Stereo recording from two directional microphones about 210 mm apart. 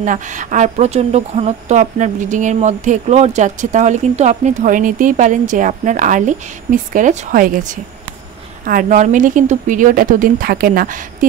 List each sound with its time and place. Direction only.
0.0 s speech: 35° right (ahead or behind)